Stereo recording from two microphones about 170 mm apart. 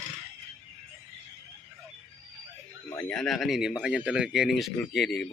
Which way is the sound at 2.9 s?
10° left (ahead or behind).